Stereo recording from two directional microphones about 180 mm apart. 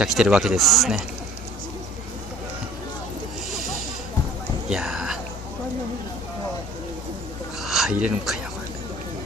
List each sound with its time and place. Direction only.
0.0 s speech: 5° right (ahead or behind)
4.6 s a sound: 5° right (ahead or behind)
7.6 s speech: centre (ahead or behind)